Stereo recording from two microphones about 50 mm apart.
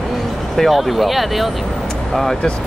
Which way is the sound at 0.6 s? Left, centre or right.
Centre.